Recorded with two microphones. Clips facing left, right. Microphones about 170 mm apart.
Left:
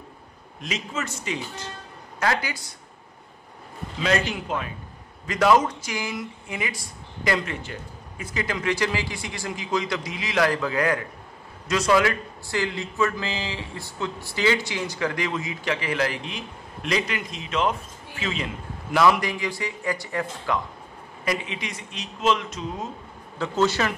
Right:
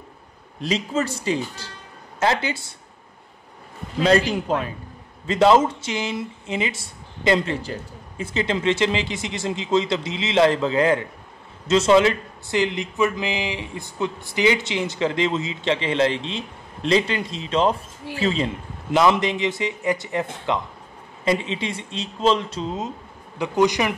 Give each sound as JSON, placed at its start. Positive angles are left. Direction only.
{"t": 0.6, "sound": "speech", "side_deg": -35}
{"t": 4.0, "sound": "speech", "side_deg": -35}
{"t": 22.8, "sound": "speech", "side_deg": -20}